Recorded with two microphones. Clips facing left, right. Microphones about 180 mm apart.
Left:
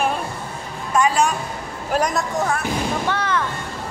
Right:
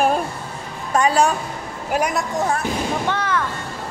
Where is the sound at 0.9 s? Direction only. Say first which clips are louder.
Right 1 dB; 35° right (ahead or behind).